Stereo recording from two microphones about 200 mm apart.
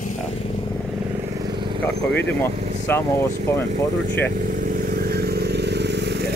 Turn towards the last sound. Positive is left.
turn(degrees=-55)  # may be behind; listen again after turning